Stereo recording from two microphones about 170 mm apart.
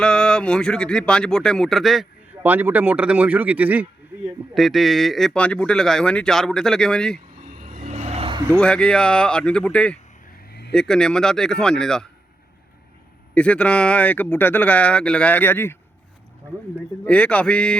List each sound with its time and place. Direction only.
0.0 s speech: 5° left (ahead or behind)
7.4 s vehicle: 45° right (ahead or behind)
8.5 s speech: 5° left (ahead or behind)
13.3 s speech: 5° left (ahead or behind)
17.1 s speech: 5° left (ahead or behind)